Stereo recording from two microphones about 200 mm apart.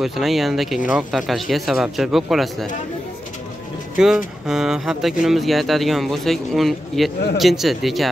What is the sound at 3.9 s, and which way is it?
Speech, centre (ahead or behind).